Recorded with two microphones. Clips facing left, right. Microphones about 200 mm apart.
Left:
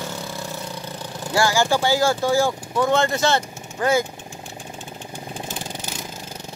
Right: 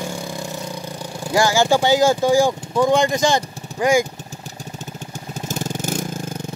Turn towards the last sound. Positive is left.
turn(degrees=-45)  # may be behind; listen again after turning